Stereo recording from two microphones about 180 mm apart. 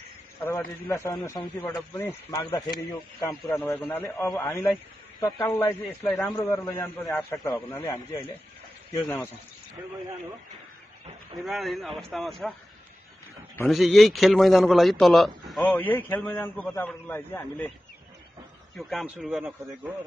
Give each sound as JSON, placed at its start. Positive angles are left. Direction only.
{"t": 0.5, "sound": "a man's voice", "side_deg": 15}
{"t": 6.5, "sound": "a man's voice", "side_deg": 15}
{"t": 8.9, "sound": "a man's voice", "side_deg": 15}
{"t": 11.4, "sound": "a man's voice", "side_deg": 0}
{"t": 13.7, "sound": "a man's voice", "side_deg": 0}
{"t": 18.8, "sound": "a man's voice", "side_deg": 0}